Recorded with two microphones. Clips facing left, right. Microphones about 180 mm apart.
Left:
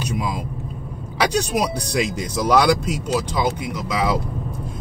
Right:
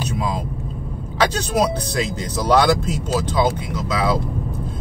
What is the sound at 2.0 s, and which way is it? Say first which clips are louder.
Speech: left 5 dB; 10° left (ahead or behind).